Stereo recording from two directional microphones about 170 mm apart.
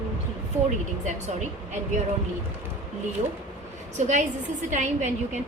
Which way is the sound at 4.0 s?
45° right (ahead or behind).